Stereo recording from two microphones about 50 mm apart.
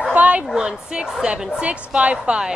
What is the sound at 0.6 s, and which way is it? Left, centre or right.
Speech, centre.